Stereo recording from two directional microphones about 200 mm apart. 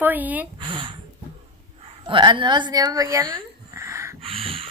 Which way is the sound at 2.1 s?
25° right (ahead or behind).